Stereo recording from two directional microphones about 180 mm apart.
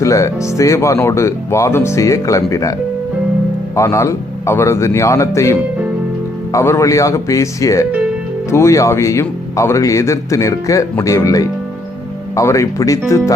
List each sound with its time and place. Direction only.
0.0 s speech: 15° left (ahead or behind)
3.8 s speech: 15° left (ahead or behind)